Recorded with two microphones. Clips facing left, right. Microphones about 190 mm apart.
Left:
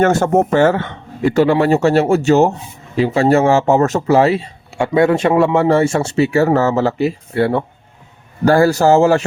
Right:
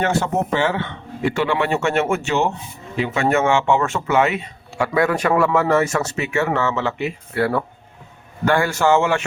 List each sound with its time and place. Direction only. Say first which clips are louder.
0.0 s speech: left 7 dB; 45° left (ahead or behind)